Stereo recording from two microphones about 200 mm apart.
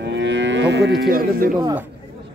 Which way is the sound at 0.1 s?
65° right (ahead or behind).